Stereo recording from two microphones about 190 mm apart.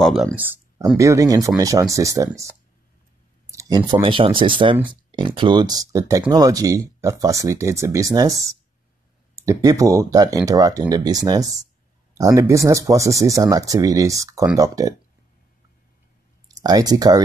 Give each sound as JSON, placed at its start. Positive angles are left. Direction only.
{"t": 0.0, "sound": "speech", "side_deg": 0}
{"t": 0.9, "sound": "speech", "side_deg": -15}
{"t": 3.5, "sound": "speech", "side_deg": -20}
{"t": 16.4, "sound": "speech", "side_deg": -20}